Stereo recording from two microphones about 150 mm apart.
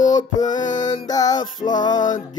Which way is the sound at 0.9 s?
25° left (ahead or behind).